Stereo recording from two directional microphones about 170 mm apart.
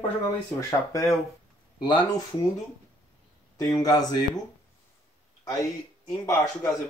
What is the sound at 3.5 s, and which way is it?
Speech, 20° left (ahead or behind).